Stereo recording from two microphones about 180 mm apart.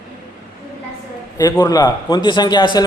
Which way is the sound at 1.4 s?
20° left (ahead or behind).